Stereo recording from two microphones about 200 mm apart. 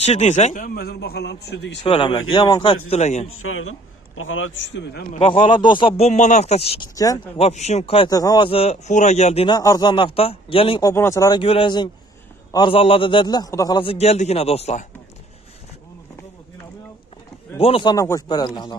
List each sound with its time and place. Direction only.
0.0 s a man's voice: 35° left (ahead or behind); by 1.8 s 60° left (ahead or behind)
1.8 s a man's voice: 25° left (ahead or behind)
2.9 s a man's voice: 30° left (ahead or behind)
3.3 s a man's voice: 90° left; by 5.0 s 60° left (ahead or behind)
5.1 s a man's voice: 30° left (ahead or behind)
7.0 s speech: 15° left (ahead or behind)
7.3 s a man's voice: 35° left (ahead or behind)
8.1 s a man's voice: 20° left (ahead or behind)
9.6 s a man's voice: 20° left (ahead or behind)
10.9 s a man's voice: 15° left (ahead or behind); by 14.9 s 30° left (ahead or behind)
17.6 s a man's voice: 30° left (ahead or behind)
17.9 s a man's voice: 15° left (ahead or behind)